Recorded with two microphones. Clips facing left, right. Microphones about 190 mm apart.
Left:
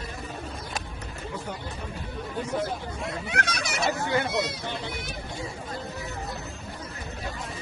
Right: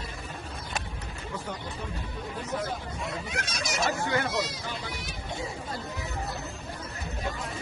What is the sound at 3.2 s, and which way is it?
Fowl, 65° left (ahead or behind).